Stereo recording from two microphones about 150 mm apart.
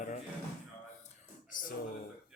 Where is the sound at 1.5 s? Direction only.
60° left (ahead or behind).